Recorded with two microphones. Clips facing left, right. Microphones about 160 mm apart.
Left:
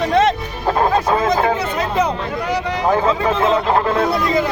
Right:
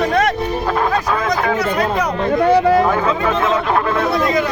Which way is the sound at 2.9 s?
30° left (ahead or behind).